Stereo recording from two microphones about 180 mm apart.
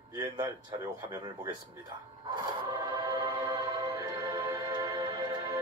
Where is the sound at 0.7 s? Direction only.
20° right (ahead or behind).